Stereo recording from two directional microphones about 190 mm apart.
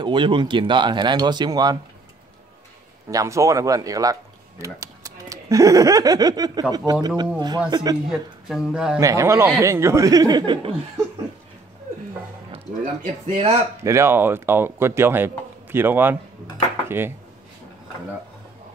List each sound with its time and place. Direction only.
0.0 s speech: 25° right (ahead or behind)
3.1 s speech: 15° right (ahead or behind)
8.1 s speech: 5° right (ahead or behind)
9.0 s speech: 15° right (ahead or behind)
12.4 s speech: 30° right (ahead or behind)
13.8 s speech: 15° right (ahead or behind)